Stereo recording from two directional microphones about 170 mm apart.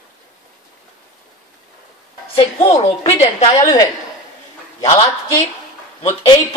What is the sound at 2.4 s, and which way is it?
A woman's voice, 35° left (ahead or behind).